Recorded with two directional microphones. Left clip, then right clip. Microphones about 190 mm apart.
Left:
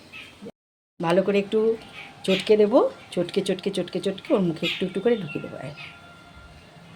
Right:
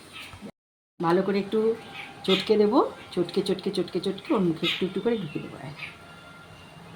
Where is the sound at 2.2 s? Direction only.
60° left (ahead or behind).